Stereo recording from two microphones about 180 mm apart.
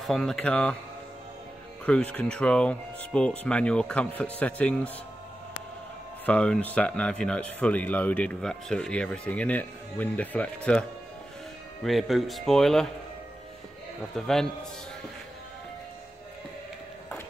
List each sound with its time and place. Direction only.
0.0 s speech: centre (ahead or behind)
1.9 s speech: 5° left (ahead or behind)
6.2 s speech: 5° left (ahead or behind)
14.1 s speech: 5° left (ahead or behind)